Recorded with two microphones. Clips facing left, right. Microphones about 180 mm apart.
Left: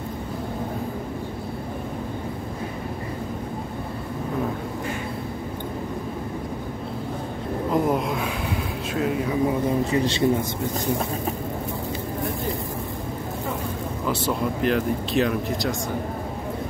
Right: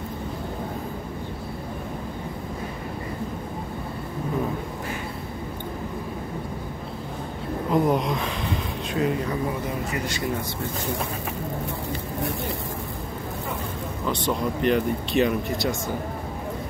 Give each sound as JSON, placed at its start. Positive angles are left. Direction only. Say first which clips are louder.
{"t": 7.7, "sound": "a sound", "louder": "right 1 dB", "side_deg": 5}
{"t": 9.5, "sound": "speech", "louder": "left 6 dB", "side_deg": 25}
{"t": 14.0, "sound": "speech", "louder": "even", "side_deg": 5}